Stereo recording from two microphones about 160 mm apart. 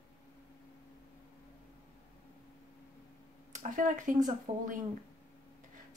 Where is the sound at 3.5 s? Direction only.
50° right (ahead or behind).